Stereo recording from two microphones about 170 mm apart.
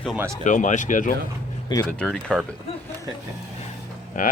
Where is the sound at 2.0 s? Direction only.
5° left (ahead or behind).